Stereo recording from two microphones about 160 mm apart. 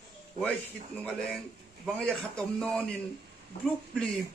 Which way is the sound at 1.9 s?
5° left (ahead or behind).